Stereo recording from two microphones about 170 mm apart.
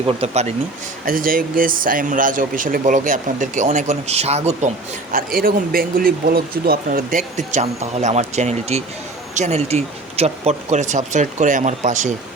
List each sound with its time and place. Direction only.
0.0 s speech: 35° right (ahead or behind)
1.0 s speech: 55° right (ahead or behind); by 4.7 s 40° right (ahead or behind)
5.1 s speech: 60° right (ahead or behind)